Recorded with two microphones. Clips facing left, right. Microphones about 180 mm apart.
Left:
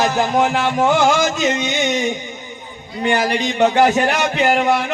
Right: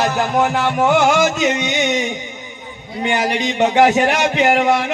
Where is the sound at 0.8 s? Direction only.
15° right (ahead or behind).